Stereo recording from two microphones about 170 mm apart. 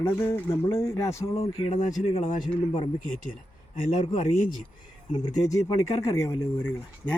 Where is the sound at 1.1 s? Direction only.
35° left (ahead or behind).